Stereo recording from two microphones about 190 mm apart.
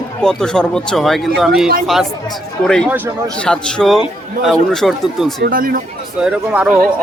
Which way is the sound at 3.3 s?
5° left (ahead or behind).